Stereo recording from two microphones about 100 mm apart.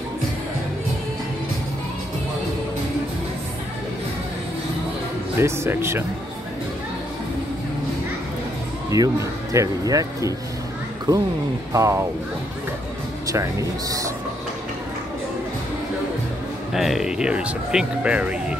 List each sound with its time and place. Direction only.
5.4 s speech: 25° right (ahead or behind)
8.9 s speech: 35° right (ahead or behind)
11.7 s speech: 30° right (ahead or behind)
13.3 s speech: 35° right (ahead or behind)
16.7 s speech: centre (ahead or behind)